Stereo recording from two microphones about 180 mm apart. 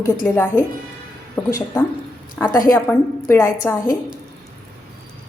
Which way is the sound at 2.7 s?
15° left (ahead or behind).